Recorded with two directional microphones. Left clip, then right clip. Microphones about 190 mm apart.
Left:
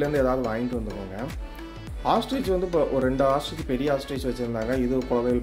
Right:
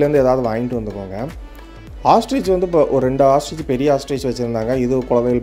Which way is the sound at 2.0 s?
35° right (ahead or behind).